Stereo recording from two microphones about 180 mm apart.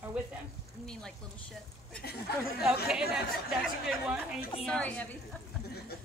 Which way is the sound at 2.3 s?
60° left (ahead or behind).